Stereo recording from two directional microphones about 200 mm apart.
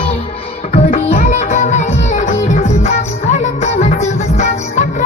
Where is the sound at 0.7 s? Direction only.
35° left (ahead or behind).